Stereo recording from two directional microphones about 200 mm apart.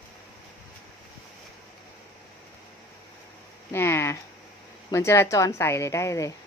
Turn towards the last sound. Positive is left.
turn(degrees=15)  # may be behind; listen again after turning